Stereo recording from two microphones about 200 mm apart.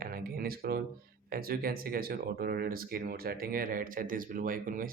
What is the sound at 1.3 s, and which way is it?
Speech, 50° right (ahead or behind).